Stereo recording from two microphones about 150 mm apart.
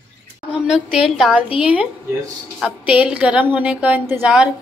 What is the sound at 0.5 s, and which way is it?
A woman's voice, 5° right (ahead or behind).